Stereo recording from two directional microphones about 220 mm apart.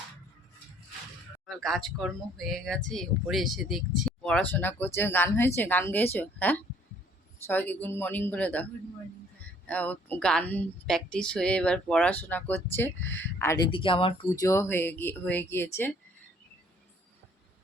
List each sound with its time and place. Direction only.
1.5 s speech: centre (ahead or behind)
9.6 s speech: 5° left (ahead or behind)
13.1 s speech: 55° left (ahead or behind)
13.4 s speech: 10° left (ahead or behind)
13.7 s speech: 25° left (ahead or behind)